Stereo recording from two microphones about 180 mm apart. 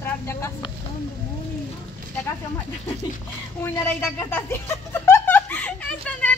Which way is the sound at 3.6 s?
10° left (ahead or behind).